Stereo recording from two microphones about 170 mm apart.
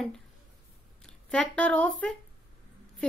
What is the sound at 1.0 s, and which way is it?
Speech, 5° left (ahead or behind).